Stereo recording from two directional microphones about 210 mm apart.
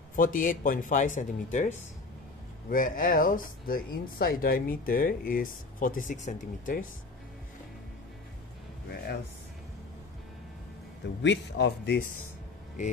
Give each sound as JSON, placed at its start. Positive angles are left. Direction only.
{"t": 0.1, "sound": "speech", "side_deg": 40}
{"t": 11.2, "sound": "speech", "side_deg": 55}